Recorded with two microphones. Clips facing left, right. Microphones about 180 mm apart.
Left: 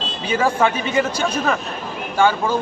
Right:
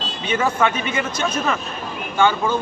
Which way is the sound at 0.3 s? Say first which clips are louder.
Left 2 dB; 30° left (ahead or behind).